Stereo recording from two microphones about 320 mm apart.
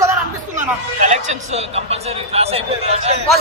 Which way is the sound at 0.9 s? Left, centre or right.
Right.